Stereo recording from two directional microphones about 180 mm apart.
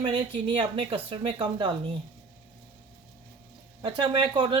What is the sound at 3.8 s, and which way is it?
Speech, 25° right (ahead or behind).